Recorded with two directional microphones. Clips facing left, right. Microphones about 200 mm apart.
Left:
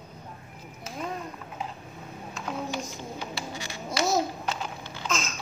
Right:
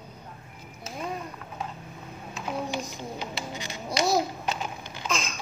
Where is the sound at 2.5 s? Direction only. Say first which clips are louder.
Right 1 dB; 15° right (ahead or behind).